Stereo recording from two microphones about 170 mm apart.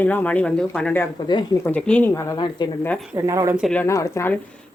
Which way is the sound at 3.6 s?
10° left (ahead or behind).